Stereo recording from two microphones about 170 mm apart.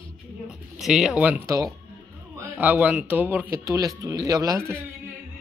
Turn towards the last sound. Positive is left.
turn(degrees=-15)  # may be behind; listen again after turning